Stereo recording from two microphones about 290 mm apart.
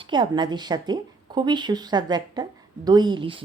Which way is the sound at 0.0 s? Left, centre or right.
Centre.